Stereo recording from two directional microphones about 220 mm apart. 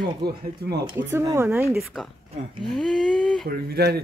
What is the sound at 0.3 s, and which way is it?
Speech, 45° right (ahead or behind).